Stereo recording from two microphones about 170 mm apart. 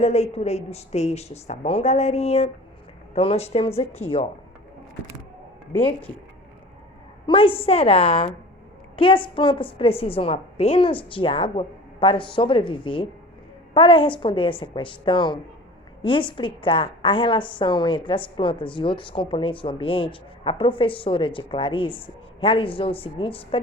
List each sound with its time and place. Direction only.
0.0 s speech: 40° left (ahead or behind)
7.3 s a woman's voice: 30° left (ahead or behind)